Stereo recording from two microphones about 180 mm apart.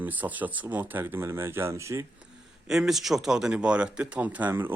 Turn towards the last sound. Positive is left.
turn(degrees=-10)  # may be behind; listen again after turning